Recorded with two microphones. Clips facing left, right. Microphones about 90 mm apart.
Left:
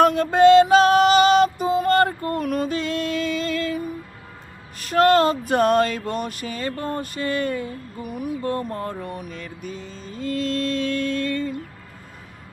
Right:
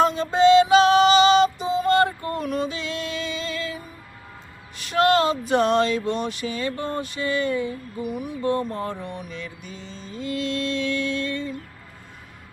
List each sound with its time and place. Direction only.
0.0 s music: 60° left (ahead or behind)
4.8 s a sound: 45° left (ahead or behind)
8.9 s music: 45° left (ahead or behind)